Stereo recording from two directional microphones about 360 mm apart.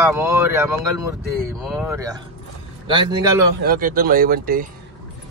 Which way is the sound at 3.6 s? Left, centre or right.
Right.